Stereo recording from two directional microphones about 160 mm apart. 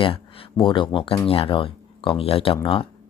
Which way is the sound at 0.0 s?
35° left (ahead or behind).